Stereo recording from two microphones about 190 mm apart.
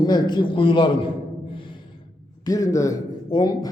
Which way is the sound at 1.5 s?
25° left (ahead or behind).